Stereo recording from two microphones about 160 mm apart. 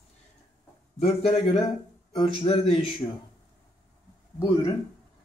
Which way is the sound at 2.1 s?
30° left (ahead or behind).